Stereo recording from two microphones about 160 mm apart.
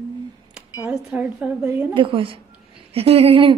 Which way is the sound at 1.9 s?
30° right (ahead or behind).